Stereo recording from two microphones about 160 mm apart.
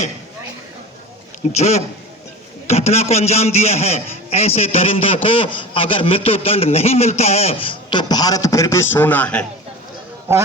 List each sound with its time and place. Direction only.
1.4 s a man's voice: 45° left (ahead or behind); by 9.5 s 10° left (ahead or behind)